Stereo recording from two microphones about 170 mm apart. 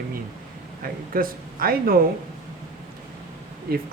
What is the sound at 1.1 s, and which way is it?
Speech, 60° right (ahead or behind).